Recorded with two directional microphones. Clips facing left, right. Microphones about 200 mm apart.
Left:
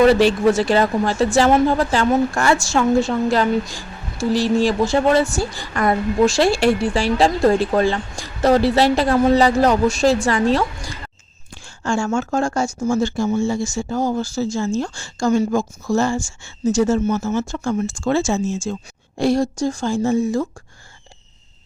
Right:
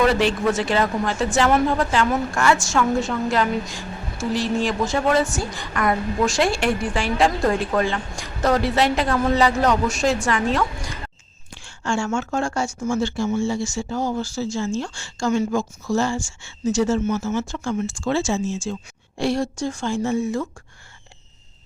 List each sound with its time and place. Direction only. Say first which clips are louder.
0.0 s a woman's voice: left 6 dB; 35° left (ahead or behind)